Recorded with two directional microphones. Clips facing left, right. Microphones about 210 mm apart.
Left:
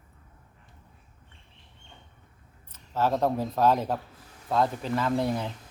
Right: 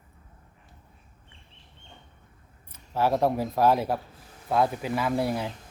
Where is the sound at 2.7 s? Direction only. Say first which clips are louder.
Right 1 dB; 10° right (ahead or behind).